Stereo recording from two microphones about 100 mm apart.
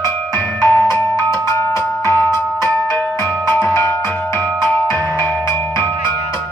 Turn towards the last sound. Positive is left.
turn(degrees=25)  # may be behind; listen again after turning